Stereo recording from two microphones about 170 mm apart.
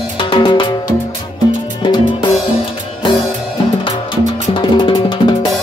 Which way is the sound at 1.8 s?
25° left (ahead or behind).